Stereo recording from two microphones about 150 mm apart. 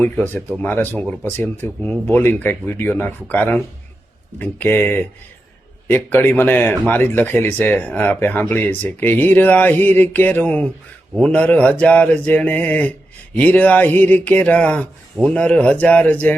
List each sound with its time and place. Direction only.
0.0 s speech: 10° left (ahead or behind)